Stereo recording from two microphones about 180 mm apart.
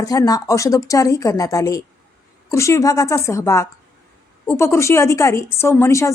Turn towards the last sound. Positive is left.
turn(degrees=15)  # may be behind; listen again after turning